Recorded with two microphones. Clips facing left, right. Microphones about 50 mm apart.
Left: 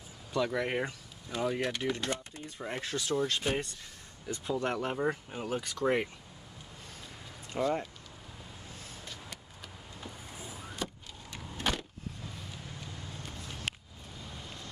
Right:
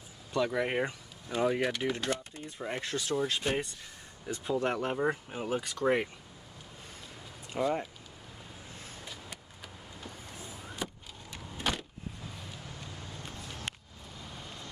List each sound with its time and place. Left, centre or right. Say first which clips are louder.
0.3 s speech: right 1 dB; centre
2.0 s speech: right 2 dB; centre
7.5 s speech: even; centre
9.0 s vehicle: even; centre
9.9 s vehicle: left 1 dB; centre
10.8 s vehicle: even; centre
11.5 s a sound: even; centre